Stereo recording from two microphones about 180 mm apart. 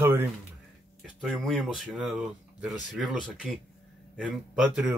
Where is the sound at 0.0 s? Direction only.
10° right (ahead or behind).